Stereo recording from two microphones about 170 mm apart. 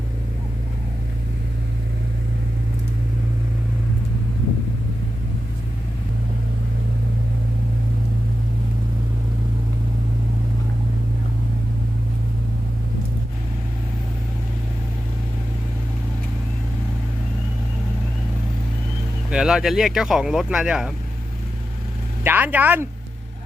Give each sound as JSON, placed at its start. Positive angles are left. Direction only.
{"t": 19.3, "sound": "speech", "side_deg": -5}
{"t": 22.2, "sound": "speech", "side_deg": -10}